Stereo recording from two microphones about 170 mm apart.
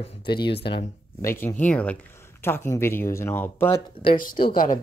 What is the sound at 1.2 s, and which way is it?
Speech, 15° left (ahead or behind).